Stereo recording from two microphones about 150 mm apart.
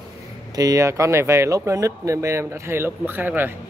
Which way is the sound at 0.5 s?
25° right (ahead or behind).